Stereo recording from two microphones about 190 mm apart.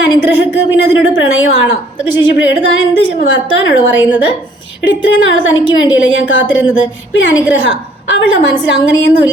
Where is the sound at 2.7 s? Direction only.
75° left (ahead or behind).